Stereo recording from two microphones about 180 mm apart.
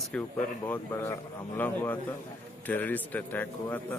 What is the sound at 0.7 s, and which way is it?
Speech, 15° left (ahead or behind).